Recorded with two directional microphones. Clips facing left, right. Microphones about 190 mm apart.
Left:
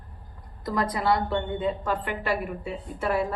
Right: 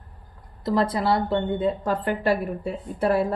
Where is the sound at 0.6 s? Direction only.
25° right (ahead or behind).